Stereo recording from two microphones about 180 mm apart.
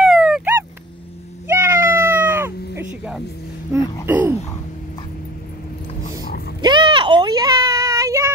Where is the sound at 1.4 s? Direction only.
15° right (ahead or behind).